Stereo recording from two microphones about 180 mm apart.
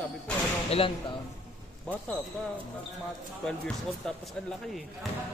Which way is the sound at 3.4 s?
5° left (ahead or behind).